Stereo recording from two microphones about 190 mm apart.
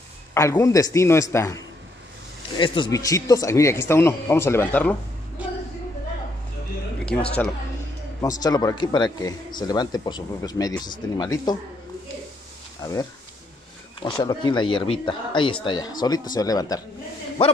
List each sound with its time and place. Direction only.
0.3 s speech: 15° left (ahead or behind)
7.1 s speech: 5° left (ahead or behind)
8.4 s speech: 20° left (ahead or behind)
13.9 s speech: 25° left (ahead or behind)